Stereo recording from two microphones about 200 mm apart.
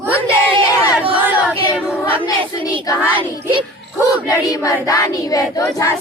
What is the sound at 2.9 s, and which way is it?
Child singing, 10° right (ahead or behind).